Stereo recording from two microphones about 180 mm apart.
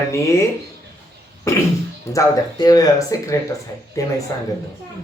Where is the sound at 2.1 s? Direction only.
20° left (ahead or behind).